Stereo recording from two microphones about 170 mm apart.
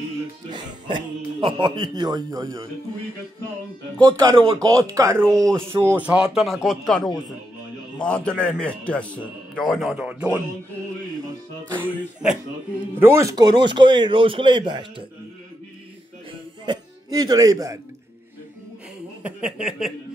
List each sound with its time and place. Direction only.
0.5 s speech: 30° right (ahead or behind)
4.0 s a man's voice: 25° right (ahead or behind); by 10.4 s 10° right (ahead or behind)
11.7 s a man's voice: 10° right (ahead or behind); by 15.0 s 30° right (ahead or behind)
16.6 s speech: 25° right (ahead or behind)
19.2 s a man's voice: 5° right (ahead or behind)